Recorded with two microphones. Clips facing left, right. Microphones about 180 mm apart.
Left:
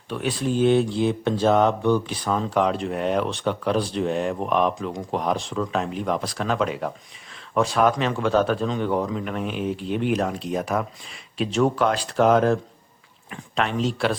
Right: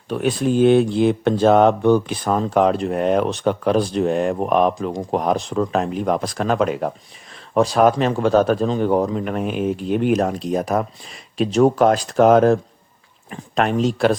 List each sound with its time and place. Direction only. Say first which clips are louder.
0.1 s speech: right 6 dB; 45° right (ahead or behind)